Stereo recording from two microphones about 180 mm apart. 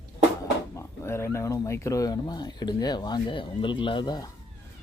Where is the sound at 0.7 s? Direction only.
15° left (ahead or behind).